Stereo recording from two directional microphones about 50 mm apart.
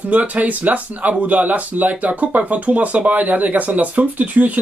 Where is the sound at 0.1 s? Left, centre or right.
Right.